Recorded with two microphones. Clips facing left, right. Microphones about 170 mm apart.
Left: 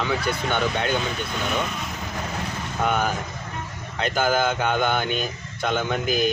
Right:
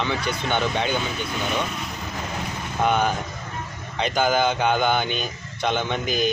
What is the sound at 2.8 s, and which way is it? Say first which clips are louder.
Speech: right 2 dB; centre (ahead or behind).